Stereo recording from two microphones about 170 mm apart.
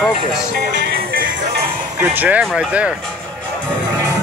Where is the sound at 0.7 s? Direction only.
90° right.